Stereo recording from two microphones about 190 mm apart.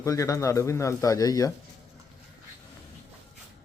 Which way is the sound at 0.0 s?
15° left (ahead or behind).